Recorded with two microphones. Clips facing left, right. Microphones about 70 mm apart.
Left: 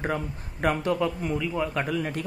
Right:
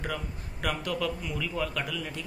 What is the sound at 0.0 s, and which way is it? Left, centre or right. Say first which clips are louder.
A man's voice: left 6 dB; left.